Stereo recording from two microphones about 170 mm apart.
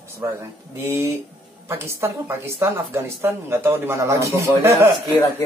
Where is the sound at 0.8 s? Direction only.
15° right (ahead or behind).